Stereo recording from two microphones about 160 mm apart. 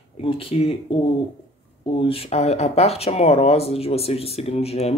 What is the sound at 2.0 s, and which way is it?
Speech, 35° left (ahead or behind).